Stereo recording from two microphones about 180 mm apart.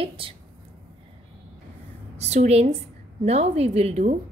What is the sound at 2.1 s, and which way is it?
A woman's voice, 35° right (ahead or behind).